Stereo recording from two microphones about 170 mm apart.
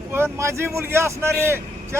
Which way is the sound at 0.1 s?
15° right (ahead or behind).